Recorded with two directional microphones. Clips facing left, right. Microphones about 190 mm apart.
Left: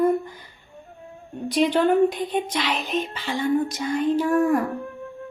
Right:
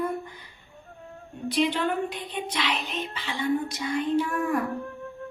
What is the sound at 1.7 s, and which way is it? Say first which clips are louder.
Music: left 9 dB; 45° left (ahead or behind).